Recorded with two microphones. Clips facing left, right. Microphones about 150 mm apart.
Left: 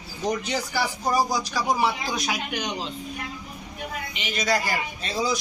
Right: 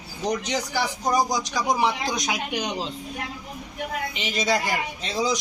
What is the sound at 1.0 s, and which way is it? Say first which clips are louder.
A man's voice: right 1 dB; 15° right (ahead or behind).